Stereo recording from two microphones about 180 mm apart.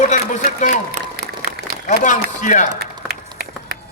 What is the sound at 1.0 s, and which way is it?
Applause, 40° right (ahead or behind).